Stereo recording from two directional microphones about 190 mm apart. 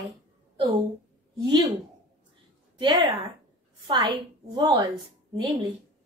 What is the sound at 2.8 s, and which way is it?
A woman's voice, 25° right (ahead or behind).